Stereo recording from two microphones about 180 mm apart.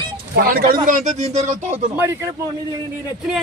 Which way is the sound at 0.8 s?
45° right (ahead or behind).